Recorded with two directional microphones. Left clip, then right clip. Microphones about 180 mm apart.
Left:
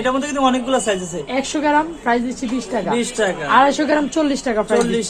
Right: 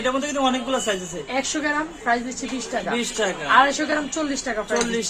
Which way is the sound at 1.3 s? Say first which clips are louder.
Left 6 dB; 55° left (ahead or behind).